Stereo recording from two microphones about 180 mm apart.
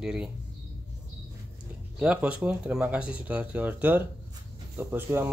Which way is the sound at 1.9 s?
5° right (ahead or behind).